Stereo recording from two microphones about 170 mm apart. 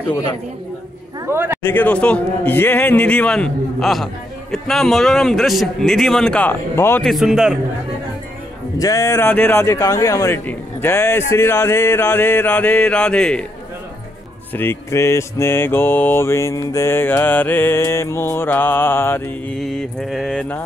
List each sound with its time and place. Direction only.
1.2 s speech: 15° right (ahead or behind)
1.6 s a man's voice: 10° left (ahead or behind)
7.0 s a man's voice: centre (ahead or behind)
8.7 s mantra: 20° left (ahead or behind)
14.5 s mantra: 15° left (ahead or behind)
19.6 s a man's voice: centre (ahead or behind)